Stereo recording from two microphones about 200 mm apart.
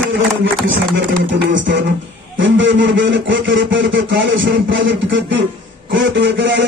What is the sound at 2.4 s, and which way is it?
Speech, 70° right (ahead or behind).